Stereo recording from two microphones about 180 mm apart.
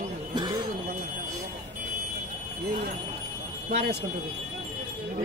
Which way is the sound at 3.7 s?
65° right (ahead or behind).